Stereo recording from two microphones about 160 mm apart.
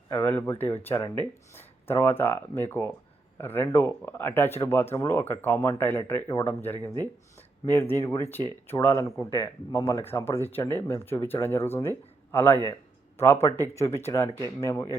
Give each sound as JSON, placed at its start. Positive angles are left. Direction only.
{"t": 0.1, "sound": "speech", "side_deg": 15}